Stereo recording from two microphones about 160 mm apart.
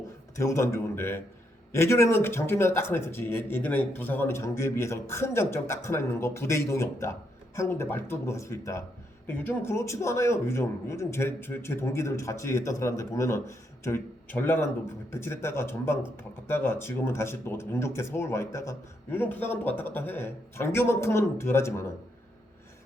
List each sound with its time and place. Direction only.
0.3 s speech: 20° left (ahead or behind)